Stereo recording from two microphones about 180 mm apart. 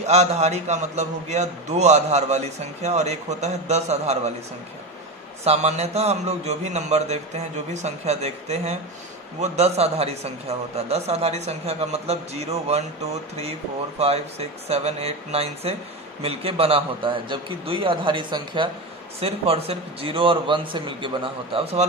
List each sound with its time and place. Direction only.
0.0 s a man's voice: 40° right (ahead or behind)
5.4 s a man's voice: 35° right (ahead or behind)